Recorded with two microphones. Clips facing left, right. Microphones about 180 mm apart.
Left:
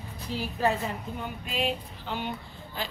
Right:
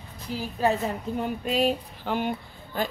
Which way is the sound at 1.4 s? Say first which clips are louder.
Right 5 dB; 40° right (ahead or behind).